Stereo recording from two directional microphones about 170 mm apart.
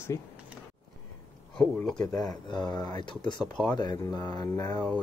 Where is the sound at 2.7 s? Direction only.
25° left (ahead or behind).